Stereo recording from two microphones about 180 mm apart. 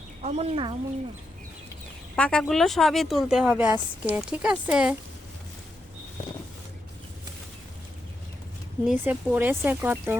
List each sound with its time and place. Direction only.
0.2 s speech: 35° right (ahead or behind)
2.1 s speech: 5° left (ahead or behind)
8.8 s speech: centre (ahead or behind)